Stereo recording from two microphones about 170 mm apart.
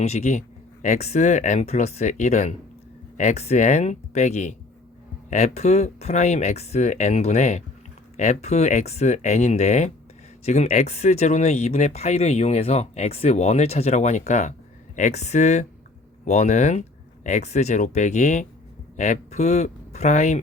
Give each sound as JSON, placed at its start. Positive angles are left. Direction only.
{"t": 0.0, "sound": "speech", "side_deg": 40}